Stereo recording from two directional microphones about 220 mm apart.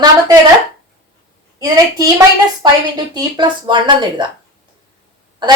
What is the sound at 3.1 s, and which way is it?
Speech, 20° right (ahead or behind).